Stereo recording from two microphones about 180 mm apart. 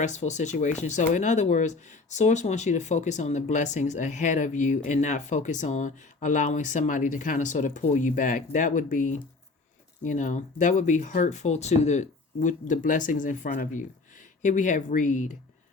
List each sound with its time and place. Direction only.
0.0 s speech: 40° left (ahead or behind)